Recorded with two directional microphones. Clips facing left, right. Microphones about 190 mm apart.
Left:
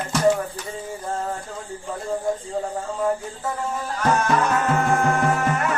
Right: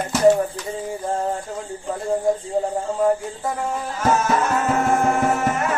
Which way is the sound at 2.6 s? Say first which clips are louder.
Right 5 dB; 25° right (ahead or behind).